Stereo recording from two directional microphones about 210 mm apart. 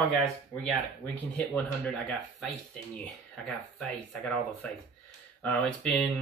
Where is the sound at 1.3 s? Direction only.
5° left (ahead or behind).